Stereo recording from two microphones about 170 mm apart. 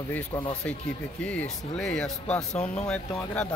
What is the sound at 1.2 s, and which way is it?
Speech, 5° left (ahead or behind).